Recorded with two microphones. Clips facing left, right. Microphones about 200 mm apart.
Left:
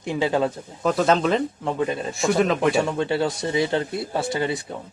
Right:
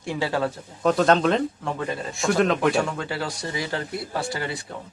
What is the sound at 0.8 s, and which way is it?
Speech, centre (ahead or behind).